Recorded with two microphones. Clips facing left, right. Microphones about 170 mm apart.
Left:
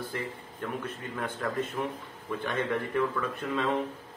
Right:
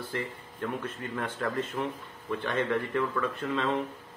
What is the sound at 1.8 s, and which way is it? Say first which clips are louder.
Speech: even; 15° left (ahead or behind).